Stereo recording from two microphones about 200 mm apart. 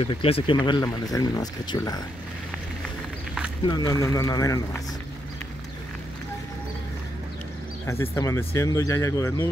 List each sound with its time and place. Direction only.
0.0 s speech: 30° left (ahead or behind)
3.6 s speech: 20° left (ahead or behind)
7.8 s speech: 15° left (ahead or behind)